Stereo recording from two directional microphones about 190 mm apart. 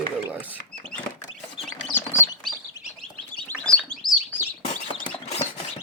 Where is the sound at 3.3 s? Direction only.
5° left (ahead or behind).